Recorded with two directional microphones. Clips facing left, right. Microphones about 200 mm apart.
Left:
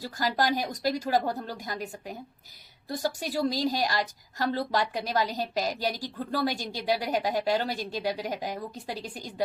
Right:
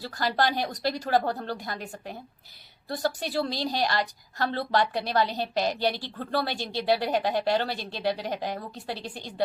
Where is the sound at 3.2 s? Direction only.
40° left (ahead or behind).